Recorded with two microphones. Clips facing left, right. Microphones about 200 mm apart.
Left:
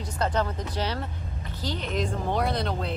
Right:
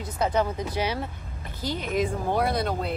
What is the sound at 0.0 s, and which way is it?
Speech, 10° right (ahead or behind).